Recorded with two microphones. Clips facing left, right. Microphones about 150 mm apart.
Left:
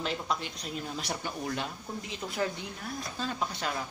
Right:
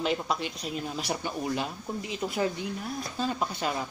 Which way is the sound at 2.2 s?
25° right (ahead or behind).